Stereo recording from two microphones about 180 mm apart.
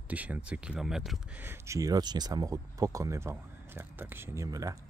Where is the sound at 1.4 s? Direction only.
15° right (ahead or behind).